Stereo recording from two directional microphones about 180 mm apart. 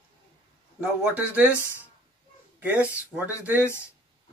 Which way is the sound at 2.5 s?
10° right (ahead or behind).